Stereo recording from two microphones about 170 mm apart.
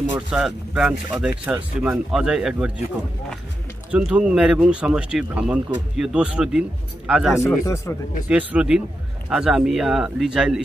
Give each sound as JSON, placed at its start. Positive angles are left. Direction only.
{"t": 0.1, "sound": "speech", "side_deg": -5}
{"t": 3.9, "sound": "speech", "side_deg": -5}
{"t": 7.4, "sound": "speech", "side_deg": 15}
{"t": 8.3, "sound": "speech", "side_deg": -10}